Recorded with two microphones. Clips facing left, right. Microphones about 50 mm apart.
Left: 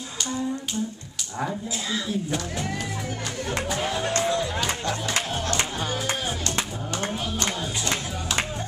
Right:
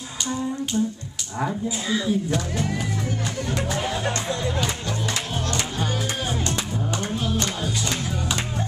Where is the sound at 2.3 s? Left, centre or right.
Centre.